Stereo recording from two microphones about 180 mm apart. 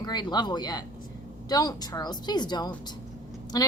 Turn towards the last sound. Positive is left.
turn(degrees=20)  # may be behind; listen again after turning